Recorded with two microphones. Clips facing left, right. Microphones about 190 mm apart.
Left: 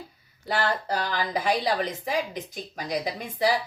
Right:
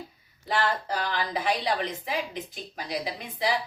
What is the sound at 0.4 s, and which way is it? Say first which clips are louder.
A woman's voice: left 1 dB; 40° left (ahead or behind).